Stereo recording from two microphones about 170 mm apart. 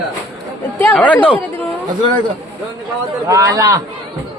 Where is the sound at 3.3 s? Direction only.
20° right (ahead or behind).